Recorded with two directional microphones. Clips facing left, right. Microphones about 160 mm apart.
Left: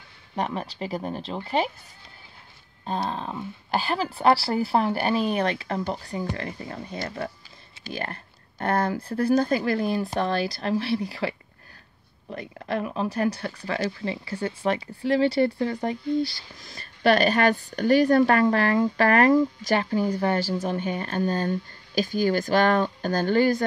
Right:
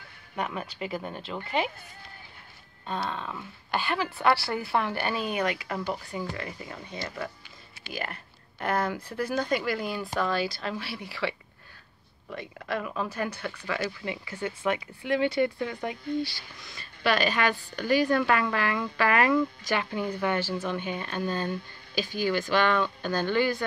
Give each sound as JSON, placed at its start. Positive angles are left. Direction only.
{"t": 0.4, "sound": "speech", "side_deg": 30}
{"t": 3.1, "sound": "speech", "side_deg": 35}